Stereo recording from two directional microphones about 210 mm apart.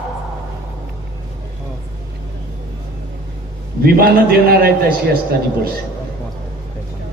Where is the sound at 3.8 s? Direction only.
45° right (ahead or behind).